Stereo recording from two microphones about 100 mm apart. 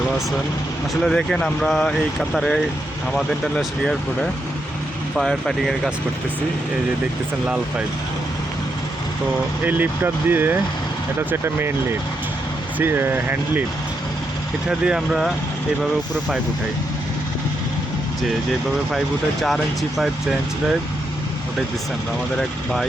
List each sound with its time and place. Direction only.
1.0 s speech: 5° left (ahead or behind)
9.6 s speech: 20° right (ahead or behind)
14.7 s speech: 10° right (ahead or behind)
18.9 s speech: centre (ahead or behind)
22.4 s speech: 5° left (ahead or behind)